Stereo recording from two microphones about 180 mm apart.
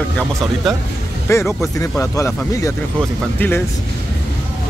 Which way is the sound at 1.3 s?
15° left (ahead or behind).